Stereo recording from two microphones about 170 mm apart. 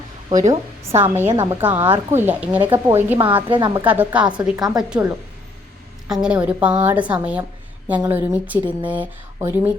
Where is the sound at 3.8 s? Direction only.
10° right (ahead or behind).